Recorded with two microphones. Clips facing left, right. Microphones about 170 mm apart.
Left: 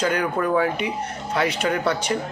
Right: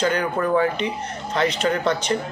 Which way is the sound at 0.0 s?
10° left (ahead or behind).